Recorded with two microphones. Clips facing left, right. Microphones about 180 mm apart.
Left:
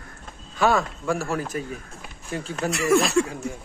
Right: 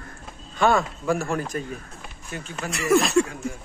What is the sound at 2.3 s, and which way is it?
Speech, 30° left (ahead or behind).